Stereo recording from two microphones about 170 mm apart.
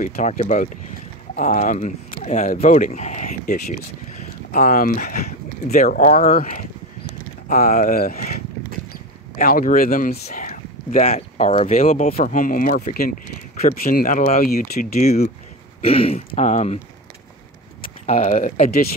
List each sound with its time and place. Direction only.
0.0 s speech: 45° left (ahead or behind)
9.4 s speech: 55° left (ahead or behind)
18.0 s speech: 45° left (ahead or behind)